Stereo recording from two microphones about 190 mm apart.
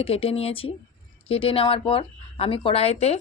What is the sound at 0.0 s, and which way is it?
A woman's voice, 30° left (ahead or behind).